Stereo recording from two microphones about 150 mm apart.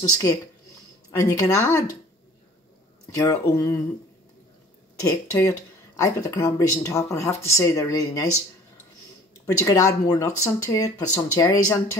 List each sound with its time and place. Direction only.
1.1 s speech: 20° left (ahead or behind)
3.2 s speech: 25° left (ahead or behind)
5.0 s speech: 20° left (ahead or behind)
9.5 s speech: 20° left (ahead or behind)